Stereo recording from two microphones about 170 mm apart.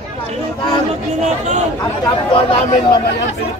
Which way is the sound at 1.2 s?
40° right (ahead or behind).